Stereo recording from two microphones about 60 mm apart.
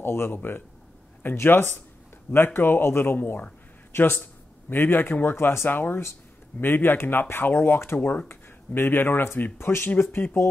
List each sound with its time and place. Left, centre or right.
0.0 s speech: left